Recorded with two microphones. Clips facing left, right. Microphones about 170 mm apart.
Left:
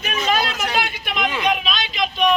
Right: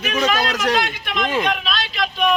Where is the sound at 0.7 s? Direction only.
10° left (ahead or behind).